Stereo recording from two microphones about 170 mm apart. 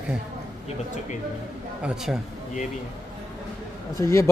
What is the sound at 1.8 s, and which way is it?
Speech, 5° right (ahead or behind).